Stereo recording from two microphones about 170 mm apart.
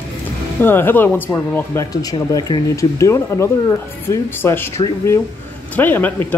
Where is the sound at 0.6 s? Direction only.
10° left (ahead or behind).